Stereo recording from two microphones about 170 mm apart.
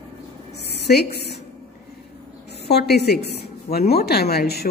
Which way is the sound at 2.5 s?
70° left (ahead or behind).